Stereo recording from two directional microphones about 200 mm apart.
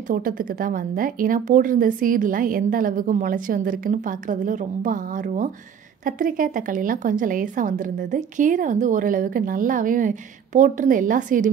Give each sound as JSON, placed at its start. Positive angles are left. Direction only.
{"t": 0.1, "sound": "a woman's voice", "side_deg": -45}